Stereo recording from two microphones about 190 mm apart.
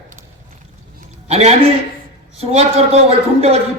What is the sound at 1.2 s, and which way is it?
A man's voice, 35° right (ahead or behind).